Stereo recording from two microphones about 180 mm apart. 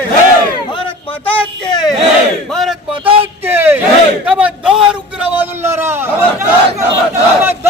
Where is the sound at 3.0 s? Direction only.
30° right (ahead or behind).